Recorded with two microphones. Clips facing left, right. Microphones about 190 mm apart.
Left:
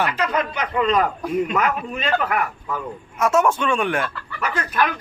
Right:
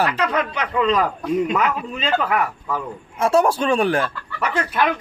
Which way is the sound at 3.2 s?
30° right (ahead or behind).